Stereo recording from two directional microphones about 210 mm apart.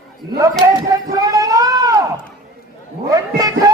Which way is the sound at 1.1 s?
15° right (ahead or behind).